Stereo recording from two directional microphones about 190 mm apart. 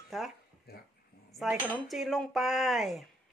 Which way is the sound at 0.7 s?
55° left (ahead or behind).